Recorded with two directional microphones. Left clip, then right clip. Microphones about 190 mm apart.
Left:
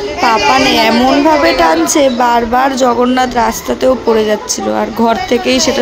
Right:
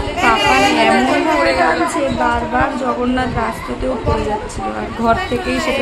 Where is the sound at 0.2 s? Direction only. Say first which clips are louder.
Left 3 dB; 35° left (ahead or behind).